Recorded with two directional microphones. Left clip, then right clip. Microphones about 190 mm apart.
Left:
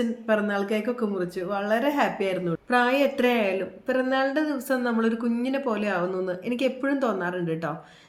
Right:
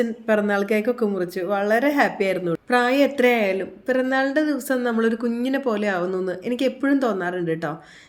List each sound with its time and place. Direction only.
0.3 s speech: 40° right (ahead or behind)